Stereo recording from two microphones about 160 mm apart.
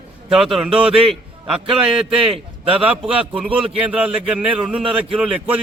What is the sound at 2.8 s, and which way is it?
A man's voice, 5° right (ahead or behind).